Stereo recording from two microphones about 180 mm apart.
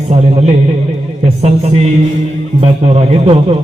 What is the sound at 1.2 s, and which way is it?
A man's voice, 35° right (ahead or behind).